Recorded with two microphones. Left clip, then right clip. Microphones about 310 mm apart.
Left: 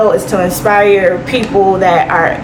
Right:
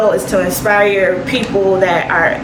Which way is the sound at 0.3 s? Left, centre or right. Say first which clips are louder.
Left 2 dB; centre.